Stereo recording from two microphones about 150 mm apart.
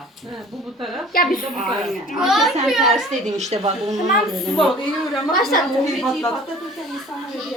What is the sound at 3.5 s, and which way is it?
Speech, 45° right (ahead or behind).